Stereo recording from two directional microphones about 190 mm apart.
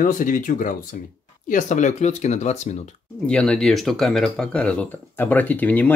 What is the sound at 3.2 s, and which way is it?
Speech, 5° left (ahead or behind).